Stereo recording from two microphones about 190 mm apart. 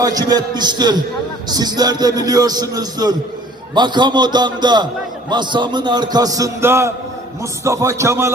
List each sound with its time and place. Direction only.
0.0 s a man's voice: 20° right (ahead or behind)